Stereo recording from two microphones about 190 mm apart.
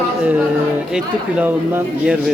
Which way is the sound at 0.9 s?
10° right (ahead or behind).